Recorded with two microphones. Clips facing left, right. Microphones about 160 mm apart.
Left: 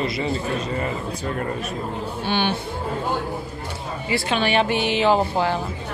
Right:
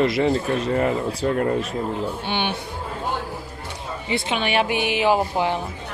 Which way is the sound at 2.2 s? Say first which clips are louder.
Left 3 dB; 20° right (ahead or behind).